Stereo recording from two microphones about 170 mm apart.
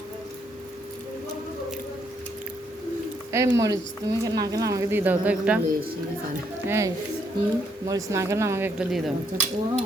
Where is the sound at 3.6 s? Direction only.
20° right (ahead or behind).